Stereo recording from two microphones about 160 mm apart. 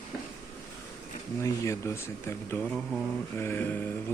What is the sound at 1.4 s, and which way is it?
Speech, 20° left (ahead or behind).